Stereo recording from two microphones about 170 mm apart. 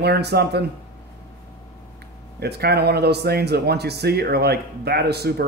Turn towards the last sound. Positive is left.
turn(degrees=-75)  # may be behind; listen again after turning